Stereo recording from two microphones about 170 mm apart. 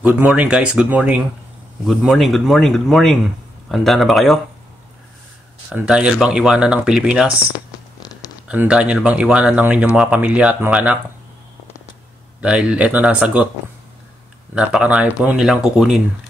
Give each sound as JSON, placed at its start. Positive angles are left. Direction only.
{"t": 0.0, "sound": "speech", "side_deg": -10}
{"t": 5.7, "sound": "speech", "side_deg": -5}
{"t": 8.0, "sound": "a sound", "side_deg": 20}
{"t": 8.5, "sound": "speech", "side_deg": -5}
{"t": 12.4, "sound": "speech", "side_deg": -5}
{"t": 14.5, "sound": "speech", "side_deg": -5}